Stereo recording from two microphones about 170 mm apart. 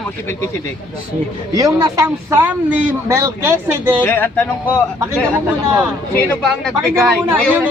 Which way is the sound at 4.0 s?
10° left (ahead or behind).